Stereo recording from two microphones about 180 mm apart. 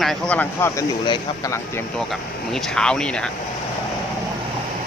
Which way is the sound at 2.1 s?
Centre (ahead or behind).